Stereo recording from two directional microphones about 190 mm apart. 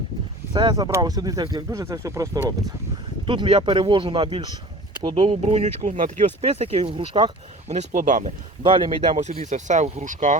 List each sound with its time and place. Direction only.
0.5 s speech: 20° right (ahead or behind)
3.2 s speech: 30° right (ahead or behind)
7.7 s speech: 40° right (ahead or behind)
8.6 s speech: 25° right (ahead or behind); by 10.3 s 40° right (ahead or behind)